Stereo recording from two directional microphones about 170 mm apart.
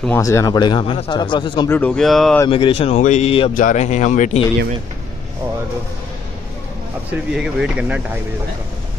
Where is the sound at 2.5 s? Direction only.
35° left (ahead or behind).